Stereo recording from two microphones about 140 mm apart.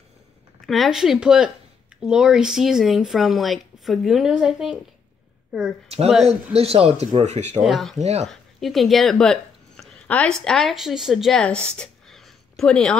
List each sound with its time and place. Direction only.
0.6 s speech: centre (ahead or behind)
5.9 s speech: 45° right (ahead or behind)
7.6 s speech: centre (ahead or behind)
8.0 s speech: 50° right (ahead or behind)
8.3 s speech: centre (ahead or behind)